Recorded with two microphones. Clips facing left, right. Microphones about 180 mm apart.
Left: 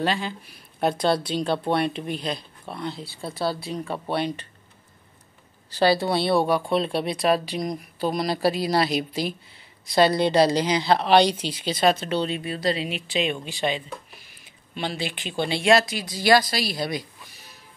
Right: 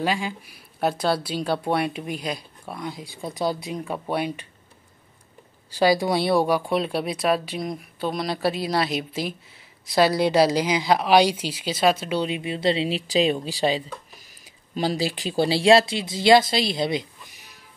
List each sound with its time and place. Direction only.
0.0 s speech: 10° right (ahead or behind)
5.7 s speech: 10° right (ahead or behind)
12.5 s speech: 25° right (ahead or behind)